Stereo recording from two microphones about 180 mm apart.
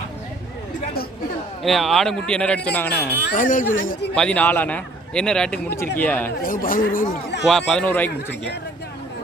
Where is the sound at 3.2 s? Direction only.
50° left (ahead or behind).